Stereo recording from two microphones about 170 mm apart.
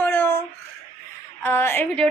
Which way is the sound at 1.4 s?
15° left (ahead or behind).